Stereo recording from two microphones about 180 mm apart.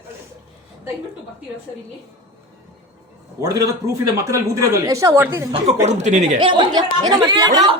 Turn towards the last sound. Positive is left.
turn(degrees=-25)  # may be behind; listen again after turning